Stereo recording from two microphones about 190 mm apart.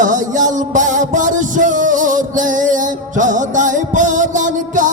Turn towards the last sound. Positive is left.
turn(degrees=-40)  # may be behind; listen again after turning